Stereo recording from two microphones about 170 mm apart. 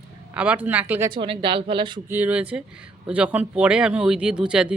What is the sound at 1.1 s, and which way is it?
Speech, 30° right (ahead or behind).